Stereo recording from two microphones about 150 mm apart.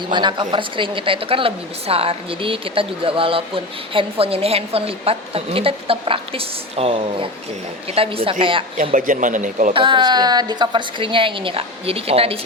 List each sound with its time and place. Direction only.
0.1 s speech: 30° right (ahead or behind)
8.8 s speech: 60° right (ahead or behind)
9.7 s speech: 30° right (ahead or behind)